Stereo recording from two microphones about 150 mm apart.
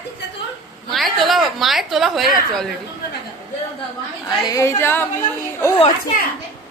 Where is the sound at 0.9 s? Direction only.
Centre (ahead or behind).